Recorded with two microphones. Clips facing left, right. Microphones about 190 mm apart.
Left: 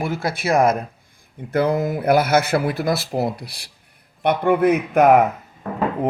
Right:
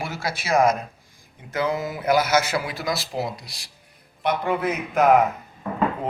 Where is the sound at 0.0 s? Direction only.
55° left (ahead or behind).